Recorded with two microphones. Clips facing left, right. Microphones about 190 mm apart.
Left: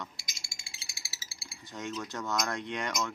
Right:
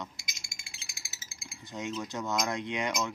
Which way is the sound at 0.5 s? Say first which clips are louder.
Even; 30° left (ahead or behind).